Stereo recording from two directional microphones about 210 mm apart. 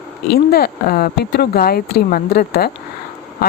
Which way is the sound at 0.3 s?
50° left (ahead or behind).